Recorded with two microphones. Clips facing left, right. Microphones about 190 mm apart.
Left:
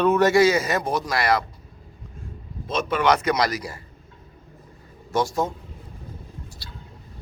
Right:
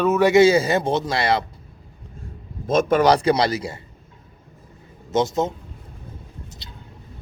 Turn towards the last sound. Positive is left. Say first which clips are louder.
# even
turn(degrees=-20)  # may be behind; listen again after turning